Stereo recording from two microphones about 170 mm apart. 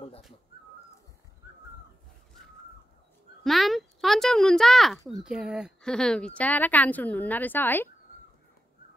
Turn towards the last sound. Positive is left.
turn(degrees=10)  # may be behind; listen again after turning